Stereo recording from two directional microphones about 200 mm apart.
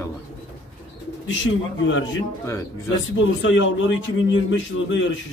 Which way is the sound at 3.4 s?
70° left (ahead or behind).